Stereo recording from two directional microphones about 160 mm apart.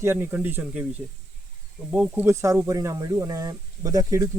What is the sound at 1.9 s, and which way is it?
Speech, 10° right (ahead or behind).